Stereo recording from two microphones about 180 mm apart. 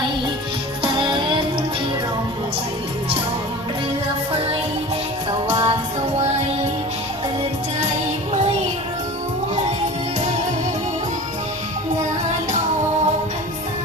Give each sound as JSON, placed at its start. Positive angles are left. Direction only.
{"t": 0.8, "sound": "music", "side_deg": -25}
{"t": 5.5, "sound": "music", "side_deg": -25}